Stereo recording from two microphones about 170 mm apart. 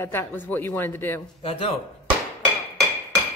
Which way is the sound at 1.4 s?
35° left (ahead or behind).